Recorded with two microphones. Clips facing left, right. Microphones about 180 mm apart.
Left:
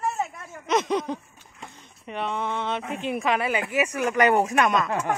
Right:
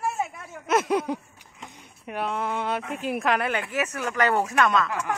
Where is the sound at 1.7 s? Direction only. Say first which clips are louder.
Right 1 dB; 10° right (ahead or behind); by 4.9 s 20° left (ahead or behind).